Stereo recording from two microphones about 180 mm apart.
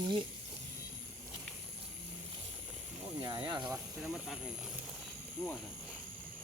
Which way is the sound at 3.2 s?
25° right (ahead or behind).